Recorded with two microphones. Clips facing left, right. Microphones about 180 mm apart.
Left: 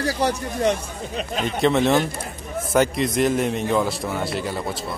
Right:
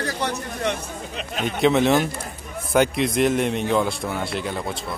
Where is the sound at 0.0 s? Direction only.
35° left (ahead or behind).